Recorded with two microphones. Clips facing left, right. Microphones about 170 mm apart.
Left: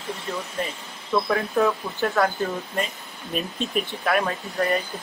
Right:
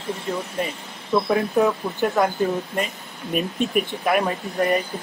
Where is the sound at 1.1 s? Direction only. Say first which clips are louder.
Right 3 dB; 15° right (ahead or behind).